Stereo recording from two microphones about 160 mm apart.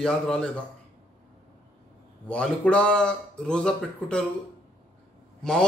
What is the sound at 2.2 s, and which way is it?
A man's voice, 5° left (ahead or behind).